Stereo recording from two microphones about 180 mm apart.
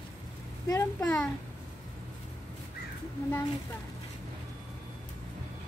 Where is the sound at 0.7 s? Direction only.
20° left (ahead or behind).